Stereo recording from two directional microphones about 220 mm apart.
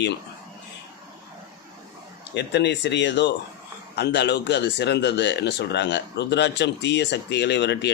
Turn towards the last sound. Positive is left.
turn(degrees=50)  # may be behind; listen again after turning